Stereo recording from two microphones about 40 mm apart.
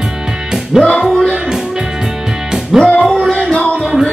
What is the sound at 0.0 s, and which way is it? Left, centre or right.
Music, centre.